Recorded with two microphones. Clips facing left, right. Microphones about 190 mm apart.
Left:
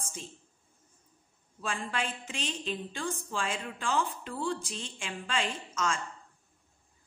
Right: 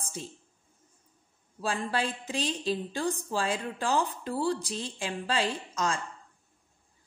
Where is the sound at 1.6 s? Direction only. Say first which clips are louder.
Right 4 dB; 35° right (ahead or behind).